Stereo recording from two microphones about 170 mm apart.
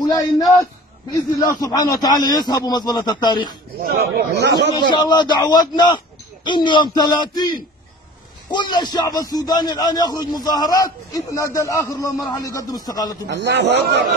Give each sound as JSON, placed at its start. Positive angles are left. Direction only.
{"t": 0.0, "sound": "a man's voice", "side_deg": 20}
{"t": 4.1, "sound": "speech", "side_deg": -75}
{"t": 4.7, "sound": "a man's voice", "side_deg": 25}
{"t": 13.3, "sound": "a man's voice", "side_deg": -90}